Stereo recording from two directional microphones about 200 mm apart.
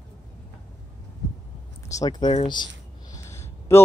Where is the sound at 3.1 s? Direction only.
15° left (ahead or behind).